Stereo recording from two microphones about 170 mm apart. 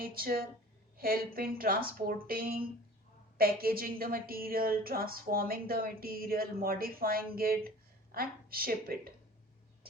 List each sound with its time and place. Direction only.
0.0 s a woman's voice: 60° right (ahead or behind)